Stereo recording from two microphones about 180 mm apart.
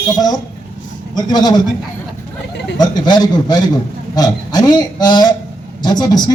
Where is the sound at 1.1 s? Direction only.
25° left (ahead or behind).